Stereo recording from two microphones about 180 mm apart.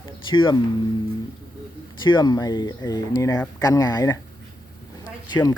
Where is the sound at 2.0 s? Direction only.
25° left (ahead or behind).